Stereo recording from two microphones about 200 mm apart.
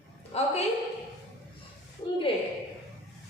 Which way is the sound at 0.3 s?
30° left (ahead or behind).